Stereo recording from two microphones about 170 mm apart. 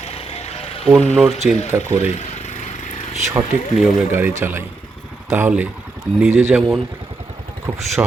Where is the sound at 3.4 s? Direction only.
15° right (ahead or behind).